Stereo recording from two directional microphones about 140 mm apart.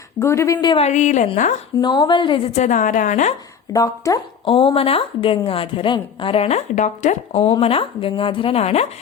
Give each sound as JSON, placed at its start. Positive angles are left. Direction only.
{"t": 0.2, "sound": "a woman's voice", "side_deg": 20}
{"t": 0.8, "sound": "a woman's voice", "side_deg": 55}
{"t": 1.8, "sound": "a woman's voice", "side_deg": 30}
{"t": 2.5, "sound": "a woman's voice", "side_deg": 60}
{"t": 3.7, "sound": "a woman's voice", "side_deg": 25}
{"t": 4.4, "sound": "a woman's voice", "side_deg": 40}
{"t": 7.4, "sound": "a woman's voice", "side_deg": 40}